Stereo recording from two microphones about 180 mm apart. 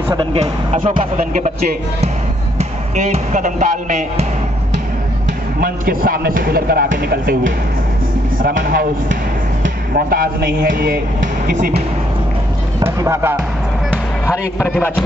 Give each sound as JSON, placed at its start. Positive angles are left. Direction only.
{"t": 0.1, "sound": "speech", "side_deg": -30}
{"t": 3.0, "sound": "speech", "side_deg": -45}
{"t": 5.6, "sound": "speech", "side_deg": -55}
{"t": 12.8, "sound": "speech", "side_deg": -15}
{"t": 14.2, "sound": "a man's voice", "side_deg": 15}